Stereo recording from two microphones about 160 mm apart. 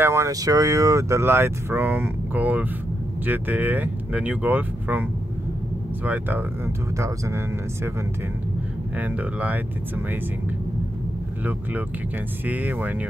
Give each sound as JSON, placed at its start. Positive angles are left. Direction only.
{"t": 0.0, "sound": "speech", "side_deg": -15}
{"t": 6.0, "sound": "speech", "side_deg": -10}
{"t": 8.9, "sound": "speech", "side_deg": -10}
{"t": 12.4, "sound": "speech", "side_deg": -10}